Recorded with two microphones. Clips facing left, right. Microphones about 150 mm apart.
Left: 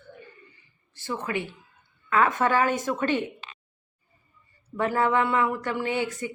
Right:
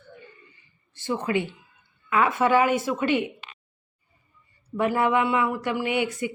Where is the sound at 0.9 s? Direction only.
20° right (ahead or behind).